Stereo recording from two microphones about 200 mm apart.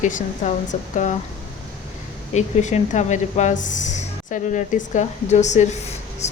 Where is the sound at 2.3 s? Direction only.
35° left (ahead or behind).